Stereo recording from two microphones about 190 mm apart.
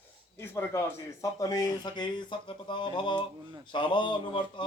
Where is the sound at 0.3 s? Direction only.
15° left (ahead or behind).